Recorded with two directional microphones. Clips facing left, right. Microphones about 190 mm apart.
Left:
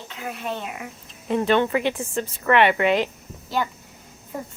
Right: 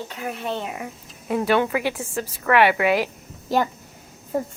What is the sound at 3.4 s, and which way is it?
Speech, 45° right (ahead or behind).